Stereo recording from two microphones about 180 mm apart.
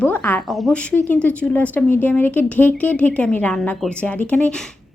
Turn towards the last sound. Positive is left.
turn(degrees=10)  # may be behind; listen again after turning